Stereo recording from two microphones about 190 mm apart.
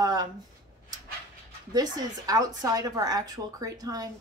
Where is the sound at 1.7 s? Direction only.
20° right (ahead or behind).